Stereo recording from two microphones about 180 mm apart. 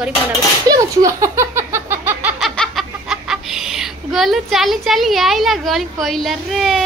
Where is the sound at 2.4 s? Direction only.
Centre (ahead or behind).